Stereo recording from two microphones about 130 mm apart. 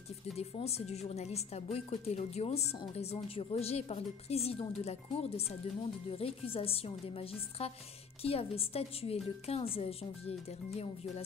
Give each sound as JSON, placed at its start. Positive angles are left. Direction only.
{"t": 0.4, "sound": "a woman's voice", "side_deg": 50}